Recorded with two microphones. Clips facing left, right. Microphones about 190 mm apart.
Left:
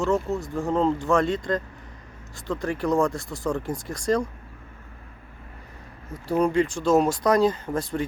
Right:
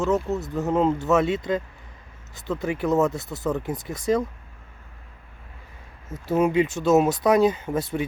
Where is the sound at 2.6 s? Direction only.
5° right (ahead or behind).